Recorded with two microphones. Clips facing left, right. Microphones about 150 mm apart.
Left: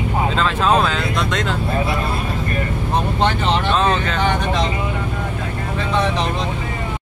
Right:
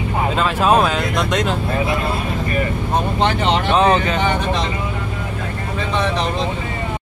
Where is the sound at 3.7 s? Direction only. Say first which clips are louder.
Right 3 dB; 15° right (ahead or behind).